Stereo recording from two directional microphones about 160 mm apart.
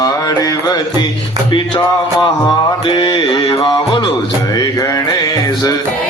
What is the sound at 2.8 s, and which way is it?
Music, 30° left (ahead or behind).